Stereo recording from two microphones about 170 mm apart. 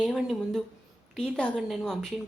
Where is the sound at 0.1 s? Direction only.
Centre (ahead or behind).